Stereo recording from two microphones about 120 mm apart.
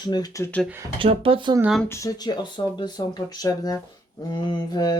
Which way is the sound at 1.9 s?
30° left (ahead or behind).